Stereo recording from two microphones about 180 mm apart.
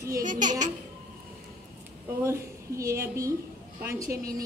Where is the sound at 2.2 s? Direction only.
15° right (ahead or behind).